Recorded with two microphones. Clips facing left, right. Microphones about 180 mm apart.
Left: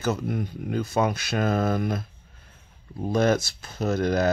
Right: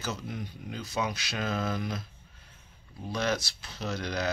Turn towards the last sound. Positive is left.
turn(degrees=50)  # may be behind; listen again after turning